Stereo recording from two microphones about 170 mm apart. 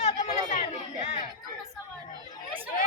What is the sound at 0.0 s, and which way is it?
Chatter, 45° left (ahead or behind).